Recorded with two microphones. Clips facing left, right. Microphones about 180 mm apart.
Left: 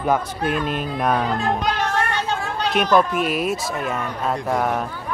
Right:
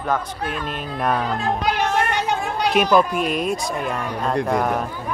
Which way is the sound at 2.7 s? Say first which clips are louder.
Even; 5° right (ahead or behind).